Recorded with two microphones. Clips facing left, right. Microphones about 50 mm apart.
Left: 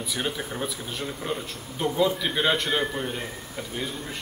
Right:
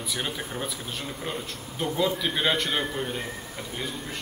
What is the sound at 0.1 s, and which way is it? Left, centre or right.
A man's voice, centre.